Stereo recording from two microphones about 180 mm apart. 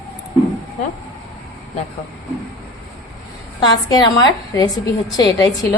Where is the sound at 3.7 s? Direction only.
25° left (ahead or behind).